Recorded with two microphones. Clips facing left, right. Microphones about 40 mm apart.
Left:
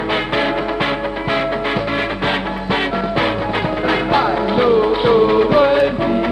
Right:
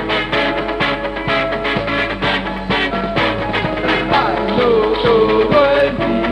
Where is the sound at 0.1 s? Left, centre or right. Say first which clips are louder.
Right 2 dB; right.